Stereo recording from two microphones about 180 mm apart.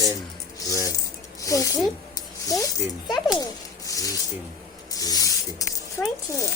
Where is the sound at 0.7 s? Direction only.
20° left (ahead or behind).